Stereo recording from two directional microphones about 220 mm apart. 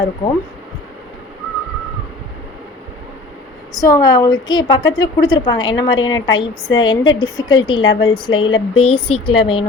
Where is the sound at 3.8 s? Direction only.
15° left (ahead or behind).